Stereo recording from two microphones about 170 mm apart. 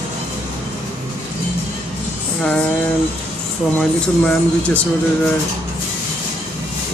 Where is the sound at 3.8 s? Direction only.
5° left (ahead or behind).